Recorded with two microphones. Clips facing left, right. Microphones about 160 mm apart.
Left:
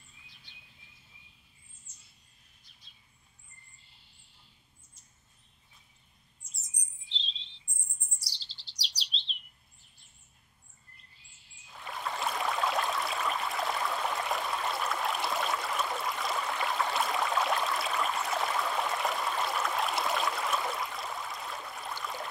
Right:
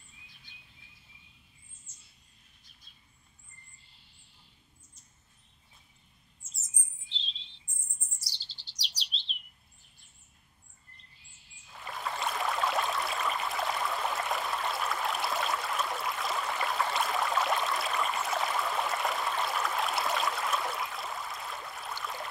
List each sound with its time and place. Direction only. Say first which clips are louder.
0.5 s bird: right 1 dB; 50° right (ahead or behind)
6.6 s chirp: right 2 dB; centre (ahead or behind)
11.7 s a sound: even; centre (ahead or behind)